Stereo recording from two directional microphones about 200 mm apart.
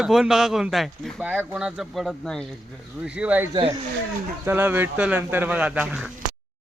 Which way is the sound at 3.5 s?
25° right (ahead or behind).